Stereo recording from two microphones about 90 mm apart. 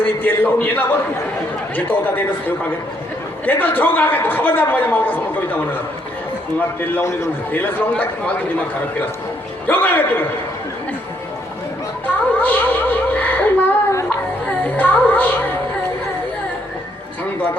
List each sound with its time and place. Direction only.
0.0 s a man's voice: 20° left (ahead or behind)
3.4 s a man's voice: 20° left (ahead or behind)
7.0 s a man's voice: 35° left (ahead or behind)
7.5 s a man's voice: 20° left (ahead or behind)
9.6 s a man's voice: 20° left (ahead or behind)
12.0 s music: 20° left (ahead or behind)